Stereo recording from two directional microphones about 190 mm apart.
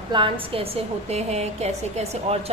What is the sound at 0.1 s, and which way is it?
A woman's voice, 25° right (ahead or behind).